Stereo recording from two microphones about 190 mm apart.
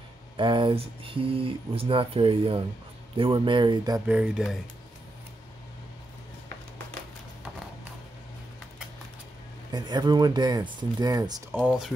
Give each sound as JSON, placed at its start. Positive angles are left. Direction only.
{"t": 0.4, "sound": "speech", "side_deg": -25}
{"t": 4.1, "sound": "speech", "side_deg": -5}
{"t": 9.7, "sound": "speech", "side_deg": -20}
{"t": 11.6, "sound": "speech", "side_deg": -5}